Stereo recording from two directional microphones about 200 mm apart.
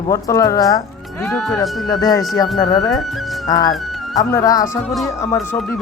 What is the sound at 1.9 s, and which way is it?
Speech, 20° left (ahead or behind).